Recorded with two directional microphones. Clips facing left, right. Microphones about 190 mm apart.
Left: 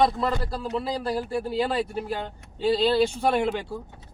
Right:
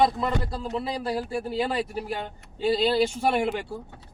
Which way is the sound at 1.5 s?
Centre (ahead or behind).